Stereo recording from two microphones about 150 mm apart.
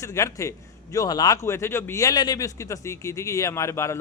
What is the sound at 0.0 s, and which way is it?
A man's voice, 20° left (ahead or behind).